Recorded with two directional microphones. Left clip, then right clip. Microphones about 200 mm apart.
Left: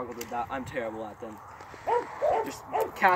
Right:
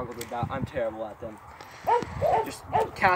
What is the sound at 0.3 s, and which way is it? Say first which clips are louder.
Speech: even; 25° left (ahead or behind).